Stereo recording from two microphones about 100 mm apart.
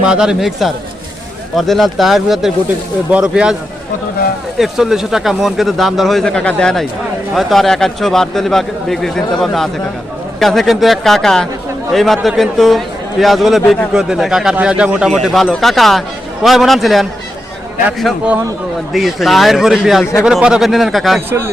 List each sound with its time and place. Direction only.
0.0 s speech: 10° right (ahead or behind)
4.5 s speech: 5° right (ahead or behind)
18.9 s speech: centre (ahead or behind)
21.2 s speech: 25° right (ahead or behind)